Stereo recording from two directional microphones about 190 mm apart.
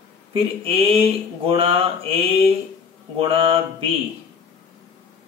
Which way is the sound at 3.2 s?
30° right (ahead or behind).